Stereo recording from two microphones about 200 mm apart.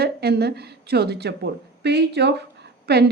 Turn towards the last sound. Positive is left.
turn(degrees=-55)  # may be behind; listen again after turning